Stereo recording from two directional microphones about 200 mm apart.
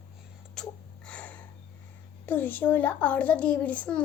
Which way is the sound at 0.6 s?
Centre (ahead or behind).